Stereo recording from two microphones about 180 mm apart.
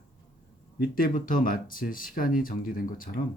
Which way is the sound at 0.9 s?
50° left (ahead or behind).